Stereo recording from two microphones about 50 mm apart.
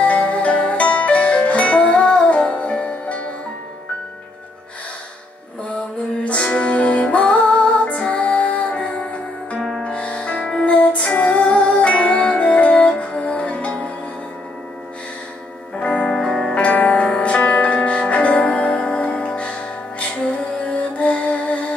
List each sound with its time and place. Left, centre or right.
0.0 s music: left
6.2 s music: left
9.6 s music: centre
9.8 s music: left
15.8 s music: left
16.1 s music: centre
16.5 s music: left
20.6 s music: left